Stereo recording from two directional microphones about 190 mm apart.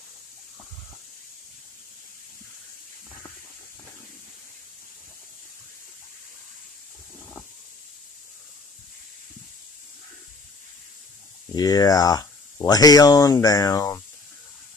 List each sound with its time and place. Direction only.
11.5 s speech: 20° left (ahead or behind)